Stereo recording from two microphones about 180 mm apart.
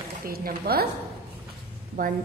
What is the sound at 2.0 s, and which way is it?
Speech, 50° right (ahead or behind).